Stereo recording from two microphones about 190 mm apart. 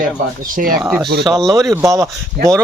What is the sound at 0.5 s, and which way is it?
Speech, 50° right (ahead or behind).